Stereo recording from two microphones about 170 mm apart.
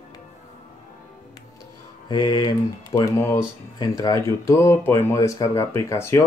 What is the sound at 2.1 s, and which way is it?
Speech, 25° left (ahead or behind).